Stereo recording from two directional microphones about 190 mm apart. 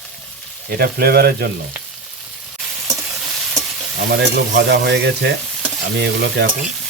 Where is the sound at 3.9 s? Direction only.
65° right (ahead or behind).